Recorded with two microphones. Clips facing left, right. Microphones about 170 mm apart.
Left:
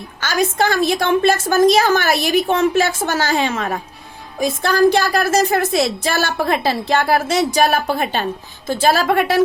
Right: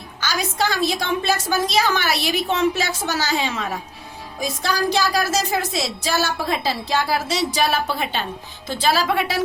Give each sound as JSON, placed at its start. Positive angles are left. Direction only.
{"t": 0.2, "sound": "speech", "side_deg": 50}